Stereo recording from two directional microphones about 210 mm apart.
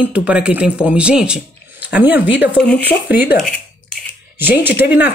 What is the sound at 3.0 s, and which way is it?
Speech, 10° right (ahead or behind).